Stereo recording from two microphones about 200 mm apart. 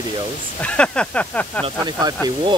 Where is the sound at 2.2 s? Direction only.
20° right (ahead or behind).